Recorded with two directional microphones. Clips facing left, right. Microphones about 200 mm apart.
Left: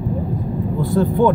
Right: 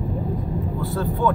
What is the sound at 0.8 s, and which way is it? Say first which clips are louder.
Vehicle: left 8 dB; 15° left (ahead or behind).